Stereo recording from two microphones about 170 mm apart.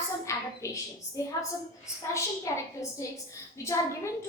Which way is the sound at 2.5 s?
20° left (ahead or behind).